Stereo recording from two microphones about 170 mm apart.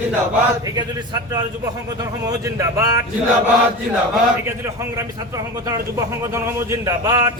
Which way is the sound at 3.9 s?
5° right (ahead or behind).